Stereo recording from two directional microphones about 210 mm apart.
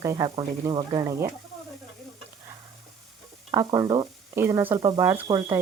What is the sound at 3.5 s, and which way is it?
Speech, 15° right (ahead or behind).